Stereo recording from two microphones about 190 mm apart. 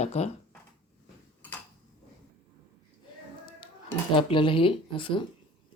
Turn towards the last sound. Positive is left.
turn(degrees=25)  # may be behind; listen again after turning